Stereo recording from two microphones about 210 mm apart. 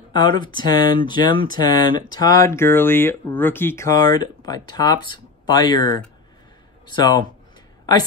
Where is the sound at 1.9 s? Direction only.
20° left (ahead or behind).